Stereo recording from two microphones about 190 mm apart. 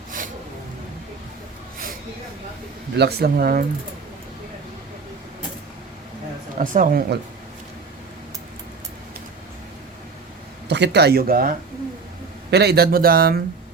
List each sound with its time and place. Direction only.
3.0 s speech: 55° right (ahead or behind)
6.6 s speech: 50° right (ahead or behind)
10.7 s speech: 65° right (ahead or behind)
12.5 s speech: 60° right (ahead or behind)